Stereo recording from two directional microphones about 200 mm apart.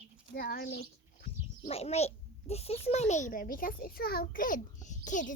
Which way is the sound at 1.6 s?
30° left (ahead or behind).